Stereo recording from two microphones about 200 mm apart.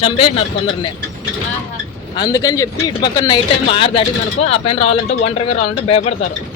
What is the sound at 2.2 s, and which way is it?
Speech, 20° left (ahead or behind).